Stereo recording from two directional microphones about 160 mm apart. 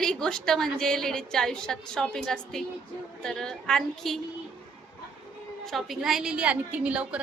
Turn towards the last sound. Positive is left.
turn(degrees=-10)  # may be behind; listen again after turning